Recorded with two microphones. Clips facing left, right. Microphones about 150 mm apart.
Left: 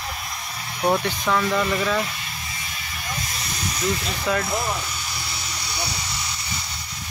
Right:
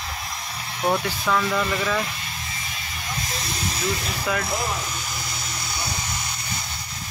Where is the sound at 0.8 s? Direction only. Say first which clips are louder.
Left 2 dB; 15° left (ahead or behind).